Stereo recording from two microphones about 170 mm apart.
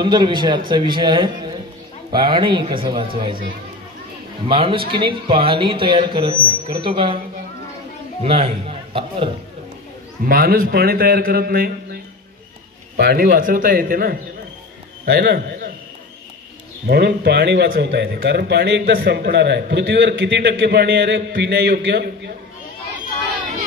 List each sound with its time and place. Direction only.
0.0 s a man's voice: 25° right (ahead or behind)
4.5 s a man's voice: 30° right (ahead or behind)
8.2 s a man's voice: 35° right (ahead or behind)
10.2 s a man's voice: 60° right (ahead or behind)
15.0 s a man's voice: 75° right (ahead or behind)
16.8 s speech: 75° right (ahead or behind)